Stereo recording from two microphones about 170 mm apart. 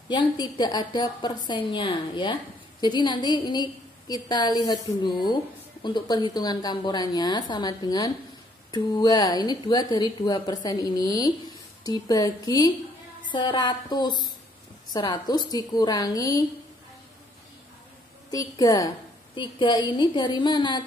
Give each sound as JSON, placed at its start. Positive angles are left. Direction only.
{"t": 0.1, "sound": "a woman's voice", "side_deg": 25}
{"t": 18.3, "sound": "a woman's voice", "side_deg": 20}